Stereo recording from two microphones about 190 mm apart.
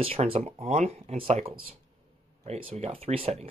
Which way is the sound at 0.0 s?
30° right (ahead or behind).